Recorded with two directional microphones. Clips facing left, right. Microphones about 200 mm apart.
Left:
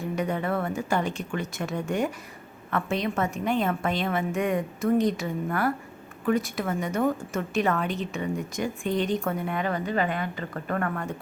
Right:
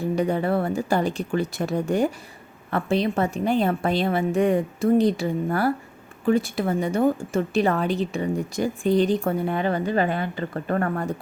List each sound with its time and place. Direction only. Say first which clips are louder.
0.0 s a woman's voice: right 5 dB; 35° right (ahead or behind)